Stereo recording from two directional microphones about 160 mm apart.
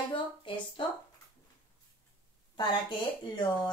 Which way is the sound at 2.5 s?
30° left (ahead or behind).